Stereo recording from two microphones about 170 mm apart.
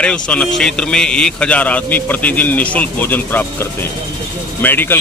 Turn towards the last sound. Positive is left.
turn(degrees=10)  # may be behind; listen again after turning